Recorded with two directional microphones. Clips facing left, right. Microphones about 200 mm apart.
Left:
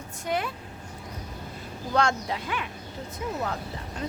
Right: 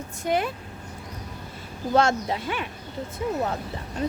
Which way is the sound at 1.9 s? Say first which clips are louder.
Right 4 dB; 25° right (ahead or behind).